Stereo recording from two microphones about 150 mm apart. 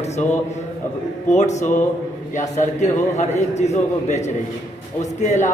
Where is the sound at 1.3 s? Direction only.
50° left (ahead or behind).